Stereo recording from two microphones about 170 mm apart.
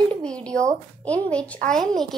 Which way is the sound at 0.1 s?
5° left (ahead or behind).